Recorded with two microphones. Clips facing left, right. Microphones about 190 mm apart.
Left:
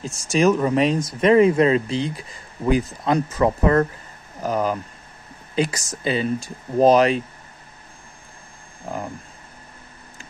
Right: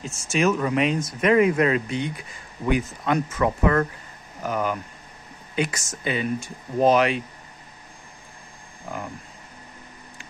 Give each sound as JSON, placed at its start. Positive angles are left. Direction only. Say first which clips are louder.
{"t": 0.0, "sound": "speech", "louder": "left 4 dB", "side_deg": 35}
{"t": 8.8, "sound": "speech", "louder": "left 4 dB", "side_deg": 30}